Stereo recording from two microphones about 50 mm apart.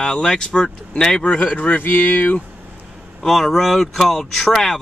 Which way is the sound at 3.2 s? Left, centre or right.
Centre.